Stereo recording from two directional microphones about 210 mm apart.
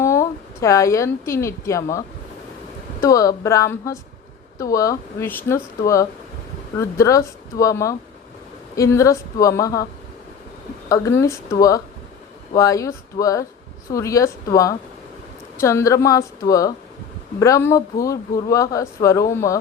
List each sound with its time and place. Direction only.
0.0 s a woman's voice: 15° left (ahead or behind)
10.8 s speech: 15° left (ahead or behind)